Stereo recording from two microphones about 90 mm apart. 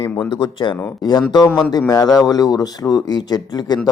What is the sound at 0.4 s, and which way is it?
Speech, 60° left (ahead or behind).